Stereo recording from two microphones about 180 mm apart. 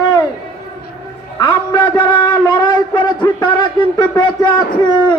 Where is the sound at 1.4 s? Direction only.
25° left (ahead or behind).